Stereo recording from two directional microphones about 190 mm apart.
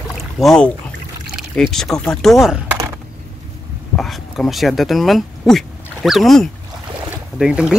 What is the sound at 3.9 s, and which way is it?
Speech, centre (ahead or behind).